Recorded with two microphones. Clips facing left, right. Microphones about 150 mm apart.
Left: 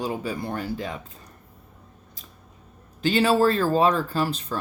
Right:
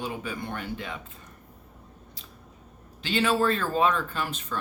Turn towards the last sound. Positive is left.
turn(degrees=35)  # may be behind; listen again after turning